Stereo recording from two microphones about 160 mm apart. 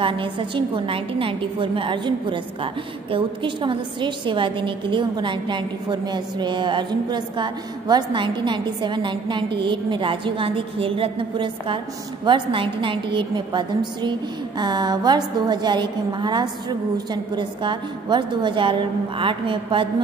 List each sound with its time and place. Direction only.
0.0 s a woman's voice: 30° right (ahead or behind)